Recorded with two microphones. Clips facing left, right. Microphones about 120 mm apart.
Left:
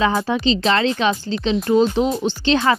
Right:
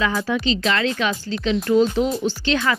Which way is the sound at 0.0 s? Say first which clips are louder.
Left 3 dB; 25° left (ahead or behind).